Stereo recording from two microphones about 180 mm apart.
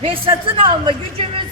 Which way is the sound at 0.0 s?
30° right (ahead or behind).